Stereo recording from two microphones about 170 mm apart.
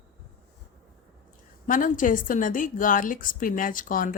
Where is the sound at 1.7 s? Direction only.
50° left (ahead or behind).